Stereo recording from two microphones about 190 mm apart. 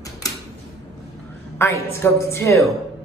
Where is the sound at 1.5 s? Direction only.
15° left (ahead or behind).